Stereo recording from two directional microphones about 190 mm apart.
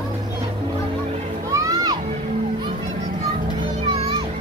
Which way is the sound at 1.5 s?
15° right (ahead or behind).